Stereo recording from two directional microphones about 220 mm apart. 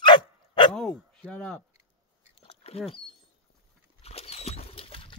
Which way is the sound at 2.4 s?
25° left (ahead or behind).